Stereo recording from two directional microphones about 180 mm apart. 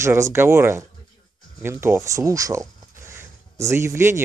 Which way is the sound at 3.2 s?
15° right (ahead or behind).